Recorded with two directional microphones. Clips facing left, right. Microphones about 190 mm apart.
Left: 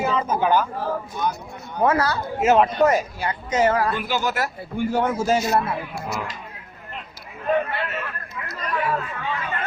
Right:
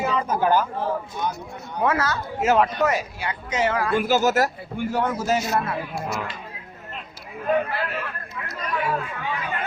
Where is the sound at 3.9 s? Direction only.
45° right (ahead or behind).